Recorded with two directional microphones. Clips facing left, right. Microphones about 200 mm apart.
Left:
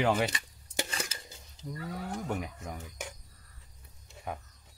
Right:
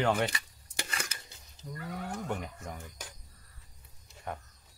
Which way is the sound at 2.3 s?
5° left (ahead or behind).